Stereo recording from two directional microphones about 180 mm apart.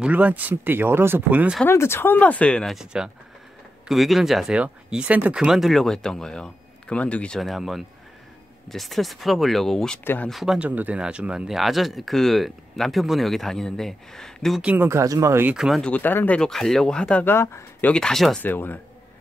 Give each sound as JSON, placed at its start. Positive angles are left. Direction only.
{"t": 0.0, "sound": "speech", "side_deg": -10}
{"t": 1.7, "sound": "speech", "side_deg": 15}
{"t": 15.5, "sound": "speech", "side_deg": 0}